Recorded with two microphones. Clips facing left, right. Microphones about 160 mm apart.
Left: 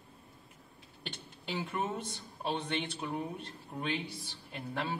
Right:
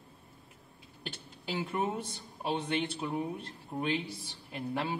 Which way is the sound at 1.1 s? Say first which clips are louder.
Right 2 dB; 5° right (ahead or behind).